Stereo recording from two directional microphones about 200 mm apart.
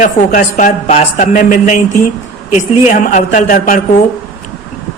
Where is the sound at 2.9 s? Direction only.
40° left (ahead or behind).